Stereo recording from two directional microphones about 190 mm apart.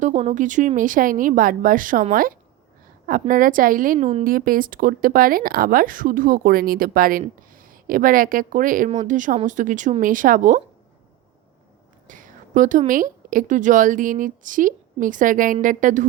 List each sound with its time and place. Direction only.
0.0 s a woman's voice: 40° right (ahead or behind)
12.0 s a woman's voice: 45° right (ahead or behind)